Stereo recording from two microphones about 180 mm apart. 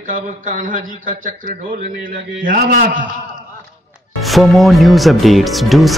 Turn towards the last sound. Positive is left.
turn(degrees=0)  # may be behind; listen again after turning